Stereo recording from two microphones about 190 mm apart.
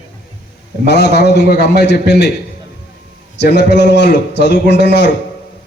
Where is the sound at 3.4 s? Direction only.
65° left (ahead or behind).